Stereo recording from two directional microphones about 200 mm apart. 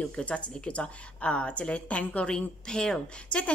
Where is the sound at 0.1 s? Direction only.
5° left (ahead or behind).